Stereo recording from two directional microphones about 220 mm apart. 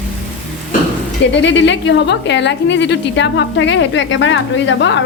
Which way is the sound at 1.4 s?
55° left (ahead or behind).